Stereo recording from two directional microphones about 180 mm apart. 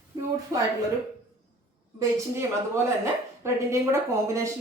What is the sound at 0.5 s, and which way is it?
Speech, 15° right (ahead or behind).